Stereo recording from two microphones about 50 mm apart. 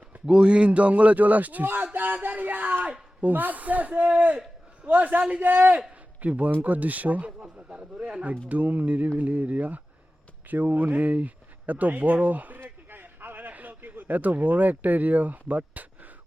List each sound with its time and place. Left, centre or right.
0.3 s a man's voice: centre; by 5.7 s right
6.2 s speech: right
7.3 s speech: centre
12.5 s a sound: right